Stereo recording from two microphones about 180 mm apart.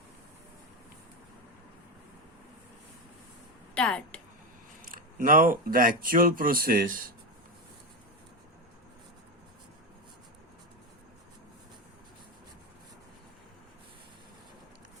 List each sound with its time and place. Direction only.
3.8 s a woman's voice: 5° left (ahead or behind)
4.8 s speech: 50° right (ahead or behind)